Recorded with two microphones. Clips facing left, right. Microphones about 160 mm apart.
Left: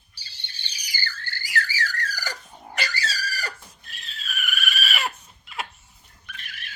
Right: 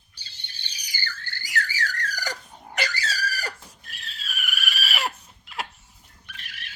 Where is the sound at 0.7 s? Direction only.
20° right (ahead or behind).